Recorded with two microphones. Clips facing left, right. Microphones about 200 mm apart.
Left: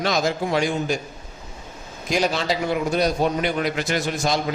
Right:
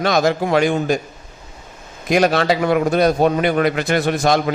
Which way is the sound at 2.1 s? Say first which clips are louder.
Right 7 dB; 60° right (ahead or behind).